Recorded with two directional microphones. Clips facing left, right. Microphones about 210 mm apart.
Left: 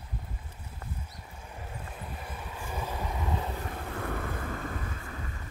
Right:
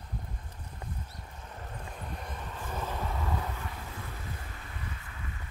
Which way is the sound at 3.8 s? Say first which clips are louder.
Left 8 dB; 60° left (ahead or behind).